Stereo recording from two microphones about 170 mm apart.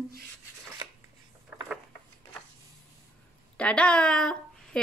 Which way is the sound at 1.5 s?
10° right (ahead or behind).